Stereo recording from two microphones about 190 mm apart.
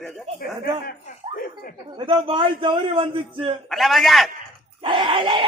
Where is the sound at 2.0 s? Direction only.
25° right (ahead or behind).